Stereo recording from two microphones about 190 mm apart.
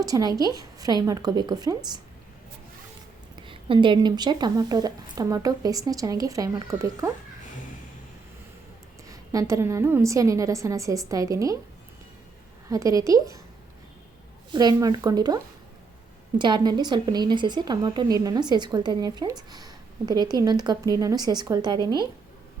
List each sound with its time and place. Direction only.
0.0 s a woman's voice: 20° right (ahead or behind)
3.3 s a woman's voice: 25° right (ahead or behind)
9.0 s a woman's voice: 15° right (ahead or behind)
12.6 s a woman's voice: 15° right (ahead or behind)
14.5 s a woman's voice: 20° right (ahead or behind)
16.4 s a woman's voice: 20° right (ahead or behind)